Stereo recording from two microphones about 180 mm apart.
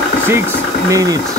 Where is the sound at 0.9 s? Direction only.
20° right (ahead or behind).